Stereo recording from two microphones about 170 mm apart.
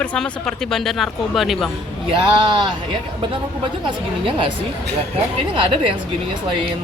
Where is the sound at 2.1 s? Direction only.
25° right (ahead or behind).